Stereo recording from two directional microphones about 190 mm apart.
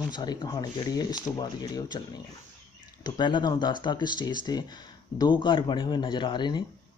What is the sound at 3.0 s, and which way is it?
Speech, 25° left (ahead or behind).